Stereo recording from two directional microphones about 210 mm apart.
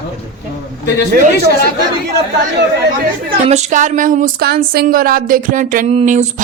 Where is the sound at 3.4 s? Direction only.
30° right (ahead or behind).